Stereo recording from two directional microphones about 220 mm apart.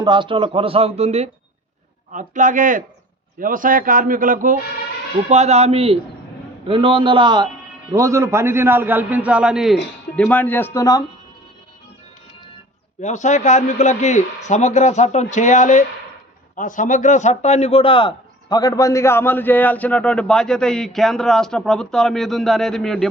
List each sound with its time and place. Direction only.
0.0 s a man's voice: 20° right (ahead or behind); by 11.0 s 15° left (ahead or behind)
13.0 s a man's voice: 35° left (ahead or behind); by 23.0 s centre (ahead or behind)